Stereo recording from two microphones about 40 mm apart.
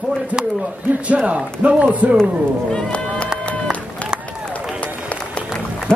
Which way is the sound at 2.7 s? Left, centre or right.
Left.